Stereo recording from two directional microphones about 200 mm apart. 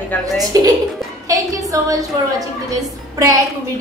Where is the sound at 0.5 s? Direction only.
20° right (ahead or behind).